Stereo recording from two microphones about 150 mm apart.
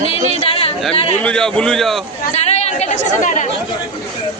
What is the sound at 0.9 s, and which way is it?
Speech, 40° left (ahead or behind).